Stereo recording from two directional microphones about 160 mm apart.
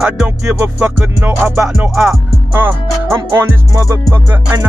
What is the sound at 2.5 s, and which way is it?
Music, 15° right (ahead or behind).